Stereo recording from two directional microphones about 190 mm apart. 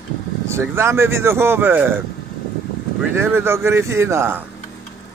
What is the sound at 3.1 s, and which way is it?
Speech, 10° right (ahead or behind).